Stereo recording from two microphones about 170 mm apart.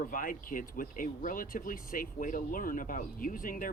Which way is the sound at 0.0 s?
55° left (ahead or behind).